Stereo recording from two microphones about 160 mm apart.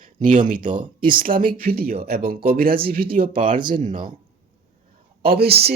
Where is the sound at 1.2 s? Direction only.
60° right (ahead or behind).